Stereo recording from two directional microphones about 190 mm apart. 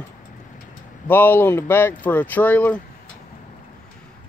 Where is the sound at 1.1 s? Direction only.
10° left (ahead or behind).